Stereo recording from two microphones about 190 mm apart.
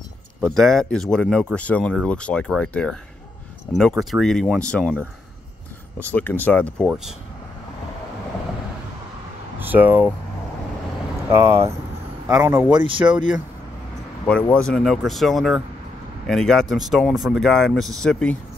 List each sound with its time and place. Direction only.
0.6 s speech: centre (ahead or behind)
5.9 s speech: 10° left (ahead or behind)
9.6 s speech: 10° right (ahead or behind)
11.3 s speech: 15° right (ahead or behind)
12.7 s speech: 25° right (ahead or behind)
14.2 s speech: 5° left (ahead or behind)